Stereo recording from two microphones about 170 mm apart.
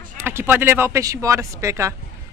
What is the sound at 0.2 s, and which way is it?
Speech, 15° right (ahead or behind).